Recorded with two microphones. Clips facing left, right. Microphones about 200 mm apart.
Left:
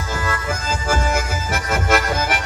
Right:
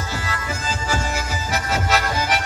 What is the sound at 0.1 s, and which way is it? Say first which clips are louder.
Music: left 4 dB; 50° left (ahead or behind).